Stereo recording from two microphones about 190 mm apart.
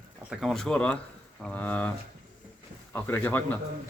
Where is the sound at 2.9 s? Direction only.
10° left (ahead or behind).